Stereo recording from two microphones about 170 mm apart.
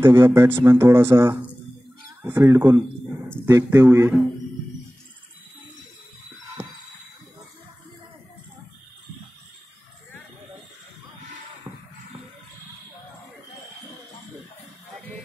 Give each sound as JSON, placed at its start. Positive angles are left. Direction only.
{"t": 0.0, "sound": "speech", "side_deg": -15}
{"t": 11.7, "sound": "music", "side_deg": -20}